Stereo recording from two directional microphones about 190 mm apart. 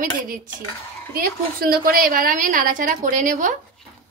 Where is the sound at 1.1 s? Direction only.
50° right (ahead or behind).